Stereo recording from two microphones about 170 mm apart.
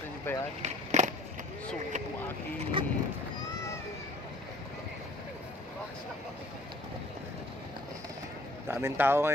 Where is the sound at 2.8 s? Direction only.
30° right (ahead or behind).